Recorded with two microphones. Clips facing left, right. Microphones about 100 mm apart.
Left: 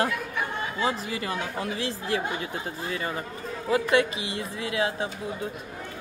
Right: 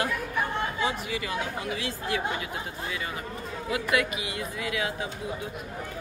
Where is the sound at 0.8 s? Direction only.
35° left (ahead or behind).